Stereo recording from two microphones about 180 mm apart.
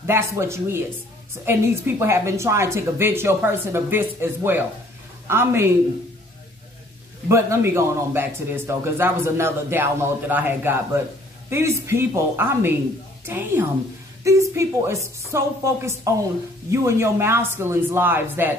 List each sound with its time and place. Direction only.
0.0 s speech: 15° right (ahead or behind)
7.2 s speech: 15° right (ahead or behind)